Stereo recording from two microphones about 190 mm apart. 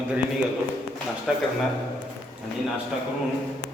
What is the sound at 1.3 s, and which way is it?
Speech, 5° right (ahead or behind).